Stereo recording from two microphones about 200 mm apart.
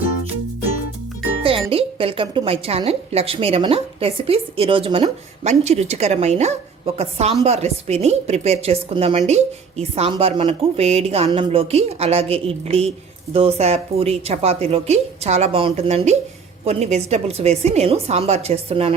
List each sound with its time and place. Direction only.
1.4 s a woman's voice: 25° right (ahead or behind)